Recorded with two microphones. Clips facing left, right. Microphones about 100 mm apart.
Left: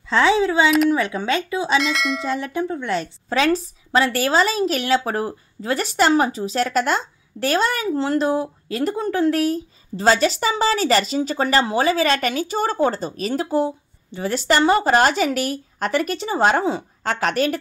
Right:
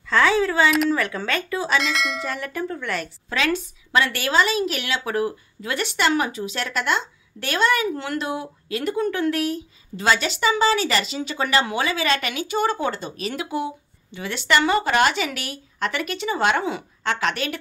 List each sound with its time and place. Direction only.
0.1 s speech: 20° left (ahead or behind)
1.8 s bell: centre (ahead or behind)
2.2 s a woman's voice: 20° left (ahead or behind); by 17.6 s 40° left (ahead or behind)